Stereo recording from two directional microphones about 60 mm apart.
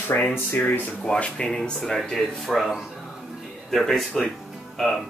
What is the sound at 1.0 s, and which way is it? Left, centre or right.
Speech, centre.